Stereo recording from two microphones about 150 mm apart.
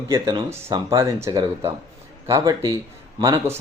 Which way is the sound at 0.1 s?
30° right (ahead or behind).